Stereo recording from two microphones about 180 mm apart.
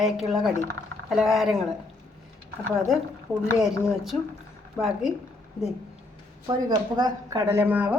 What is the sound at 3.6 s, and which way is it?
A woman's voice, 5° right (ahead or behind).